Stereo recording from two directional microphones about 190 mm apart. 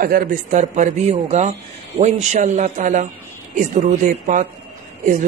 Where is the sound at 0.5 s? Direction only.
35° right (ahead or behind).